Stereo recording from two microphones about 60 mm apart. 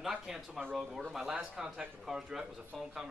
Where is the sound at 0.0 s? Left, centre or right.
Centre.